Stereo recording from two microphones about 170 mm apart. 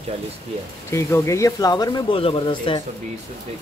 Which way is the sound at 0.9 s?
15° left (ahead or behind).